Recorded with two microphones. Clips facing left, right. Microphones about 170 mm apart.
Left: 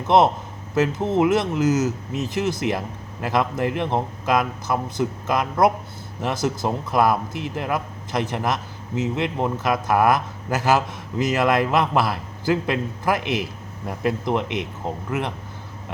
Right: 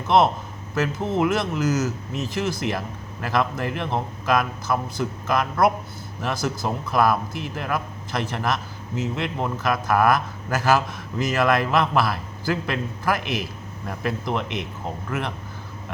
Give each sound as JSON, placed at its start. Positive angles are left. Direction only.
{"t": 0.1, "sound": "a man's voice", "side_deg": 20}